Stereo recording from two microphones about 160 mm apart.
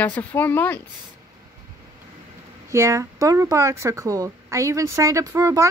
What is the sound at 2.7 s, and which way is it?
Speech, 20° right (ahead or behind).